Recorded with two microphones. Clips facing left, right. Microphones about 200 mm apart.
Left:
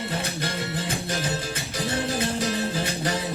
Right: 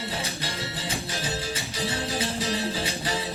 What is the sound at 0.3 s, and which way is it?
Music, 55° left (ahead or behind).